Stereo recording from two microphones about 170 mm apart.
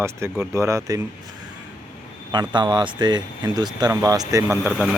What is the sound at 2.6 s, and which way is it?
Speech, 25° right (ahead or behind).